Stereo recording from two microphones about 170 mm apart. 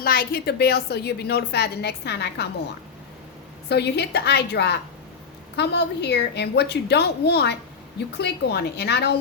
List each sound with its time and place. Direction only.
0.0 s a woman's voice: 60° left (ahead or behind)
3.7 s a woman's voice: 75° left (ahead or behind)